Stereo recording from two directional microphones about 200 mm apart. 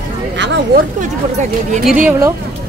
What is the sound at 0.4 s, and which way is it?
Speech, 60° right (ahead or behind).